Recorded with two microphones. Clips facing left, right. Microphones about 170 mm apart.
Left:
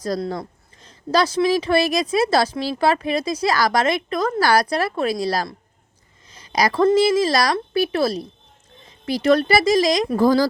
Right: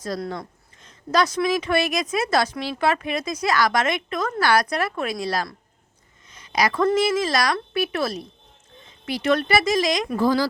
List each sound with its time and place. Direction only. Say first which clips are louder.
0.3 s speech: left 4 dB; 35° left (ahead or behind)
6.3 s a sound: left 3 dB; 35° left (ahead or behind)
6.8 s speech: left 6 dB; 30° left (ahead or behind)